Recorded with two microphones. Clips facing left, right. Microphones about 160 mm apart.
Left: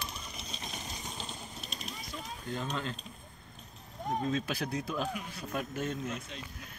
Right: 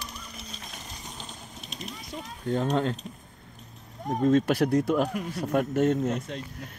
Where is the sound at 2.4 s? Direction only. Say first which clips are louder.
Right 11 dB; 65° right (ahead or behind).